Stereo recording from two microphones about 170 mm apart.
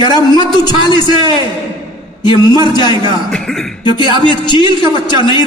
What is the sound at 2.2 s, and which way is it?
Speech, 25° left (ahead or behind).